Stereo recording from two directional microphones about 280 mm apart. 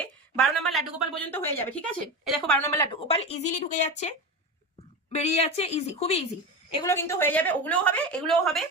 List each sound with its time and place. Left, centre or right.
0.0 s a sound: centre
1.3 s speech: centre; by 4.1 s left
5.1 s a woman's voice: left; by 8.6 s centre